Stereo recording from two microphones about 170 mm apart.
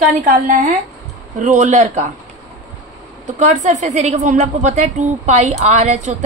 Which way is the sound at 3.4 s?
45° right (ahead or behind).